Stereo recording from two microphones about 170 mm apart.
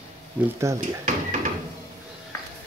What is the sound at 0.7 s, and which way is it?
Speech, 15° right (ahead or behind).